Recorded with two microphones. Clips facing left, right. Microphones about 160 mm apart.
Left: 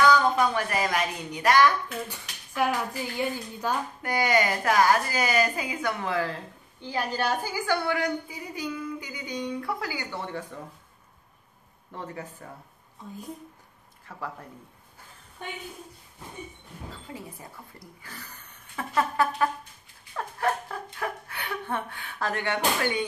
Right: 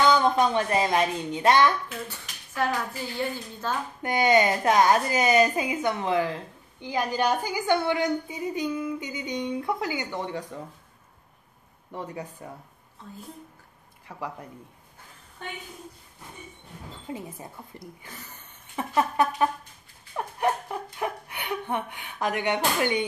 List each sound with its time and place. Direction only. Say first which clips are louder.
0.0 s speech: even; 25° right (ahead or behind)
2.0 s speech: even; 10° left (ahead or behind)
4.0 s a woman's voice: right 4 dB; 20° right (ahead or behind)
11.9 s speech: right 2 dB; 15° right (ahead or behind)
14.1 s speech: right 2 dB; 15° right (ahead or behind)
17.1 s a woman's voice: right 4 dB; 20° right (ahead or behind)